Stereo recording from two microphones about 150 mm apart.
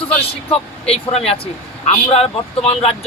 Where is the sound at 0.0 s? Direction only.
40° left (ahead or behind).